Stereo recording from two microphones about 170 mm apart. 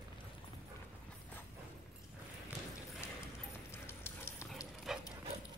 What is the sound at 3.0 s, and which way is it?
Clip-clop, 15° left (ahead or behind).